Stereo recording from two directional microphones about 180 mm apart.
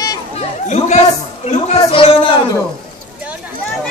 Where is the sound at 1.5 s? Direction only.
35° left (ahead or behind).